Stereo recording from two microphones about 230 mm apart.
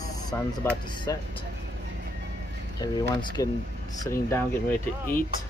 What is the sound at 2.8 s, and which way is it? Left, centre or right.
Speech, centre.